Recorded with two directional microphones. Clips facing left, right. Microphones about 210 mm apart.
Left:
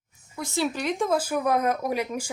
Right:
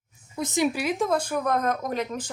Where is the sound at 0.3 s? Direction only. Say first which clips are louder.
Right 3 dB; 20° right (ahead or behind).